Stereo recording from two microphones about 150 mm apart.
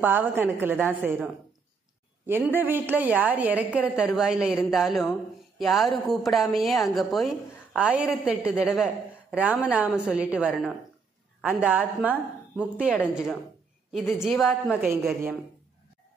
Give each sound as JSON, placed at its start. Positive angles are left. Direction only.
{"t": 0.0, "sound": "a woman's voice", "side_deg": -15}
{"t": 14.8, "sound": "a woman's voice", "side_deg": -15}